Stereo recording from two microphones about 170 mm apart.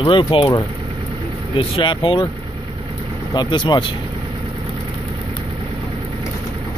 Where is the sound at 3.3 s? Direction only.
25° left (ahead or behind).